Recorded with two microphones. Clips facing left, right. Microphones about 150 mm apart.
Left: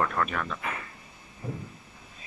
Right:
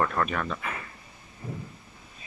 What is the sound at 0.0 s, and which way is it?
Speech, centre (ahead or behind).